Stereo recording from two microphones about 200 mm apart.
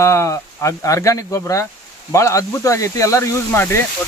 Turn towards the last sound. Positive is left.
turn(degrees=10)  # may be behind; listen again after turning